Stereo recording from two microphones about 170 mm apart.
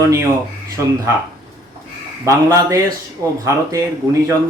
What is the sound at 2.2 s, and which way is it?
Speech, 20° right (ahead or behind).